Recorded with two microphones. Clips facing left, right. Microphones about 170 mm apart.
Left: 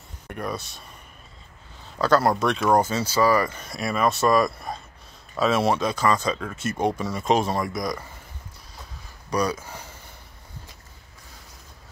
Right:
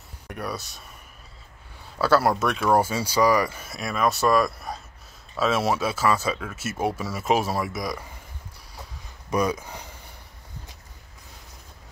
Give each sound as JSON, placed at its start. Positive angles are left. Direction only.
{"t": 0.3, "sound": "speech", "side_deg": -5}
{"t": 2.0, "sound": "speech", "side_deg": -5}
{"t": 9.3, "sound": "speech", "side_deg": -20}